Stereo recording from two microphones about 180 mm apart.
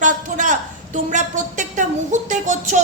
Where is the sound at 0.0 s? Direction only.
45° right (ahead or behind).